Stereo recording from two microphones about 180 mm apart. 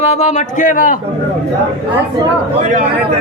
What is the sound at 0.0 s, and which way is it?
Speech, 40° left (ahead or behind).